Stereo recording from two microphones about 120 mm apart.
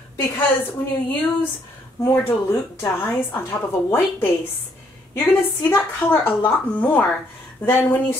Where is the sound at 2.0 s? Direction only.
15° left (ahead or behind).